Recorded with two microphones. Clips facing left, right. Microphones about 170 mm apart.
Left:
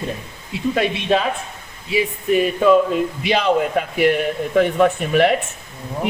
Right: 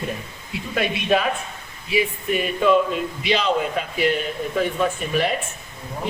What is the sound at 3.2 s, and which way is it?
A man's voice, 55° left (ahead or behind).